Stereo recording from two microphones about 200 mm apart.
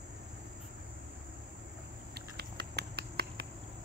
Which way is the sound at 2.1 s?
55° right (ahead or behind).